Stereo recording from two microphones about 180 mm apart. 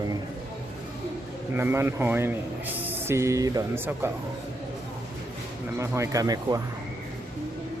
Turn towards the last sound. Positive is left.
turn(degrees=-20)  # may be behind; listen again after turning